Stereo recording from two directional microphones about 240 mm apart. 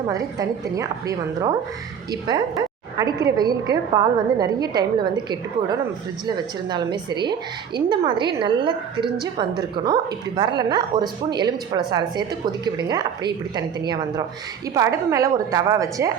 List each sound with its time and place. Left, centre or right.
0.1 s a woman's voice: centre
3.0 s a woman's voice: centre